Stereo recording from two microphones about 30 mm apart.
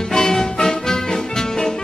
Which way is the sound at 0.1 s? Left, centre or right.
Left.